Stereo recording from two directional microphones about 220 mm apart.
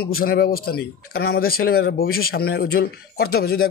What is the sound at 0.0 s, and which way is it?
A man's voice, 45° left (ahead or behind).